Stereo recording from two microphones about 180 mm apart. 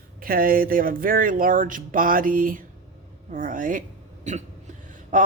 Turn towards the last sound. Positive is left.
turn(degrees=-45)  # may be behind; listen again after turning